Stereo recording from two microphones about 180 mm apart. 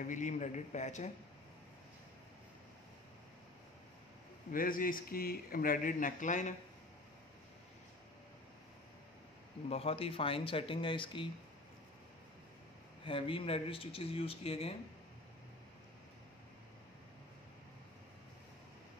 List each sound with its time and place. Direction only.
0.0 s speech: 45° left (ahead or behind)
4.5 s a man's voice: 50° left (ahead or behind)
9.7 s speech: 35° left (ahead or behind)
13.0 s speech: 30° left (ahead or behind)